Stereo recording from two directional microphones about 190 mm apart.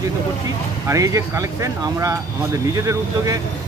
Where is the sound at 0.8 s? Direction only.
15° right (ahead or behind).